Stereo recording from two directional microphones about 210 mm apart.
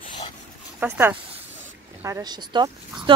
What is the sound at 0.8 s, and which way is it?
Speech, 10° right (ahead or behind).